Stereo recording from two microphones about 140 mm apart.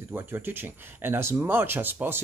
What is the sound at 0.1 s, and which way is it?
Speech, 15° right (ahead or behind).